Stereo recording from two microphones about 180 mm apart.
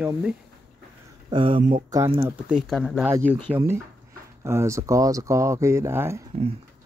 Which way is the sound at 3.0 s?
10° right (ahead or behind).